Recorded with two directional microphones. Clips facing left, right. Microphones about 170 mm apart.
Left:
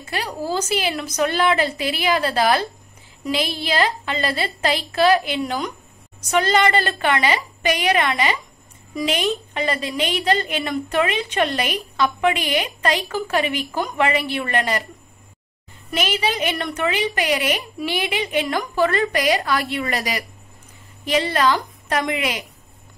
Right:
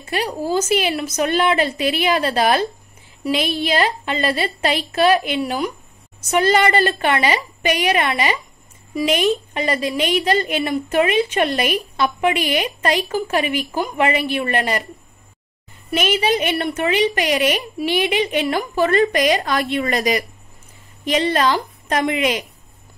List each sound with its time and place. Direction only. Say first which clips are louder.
0.1 s a woman's voice: right 4 dB; 15° right (ahead or behind)
9.5 s a woman's voice: right 3 dB; 15° right (ahead or behind)
15.9 s a woman's voice: right 4 dB; 15° right (ahead or behind)